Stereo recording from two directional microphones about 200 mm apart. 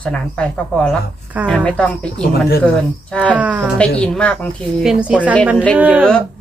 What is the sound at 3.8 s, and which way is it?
A woman's voice, 5° left (ahead or behind).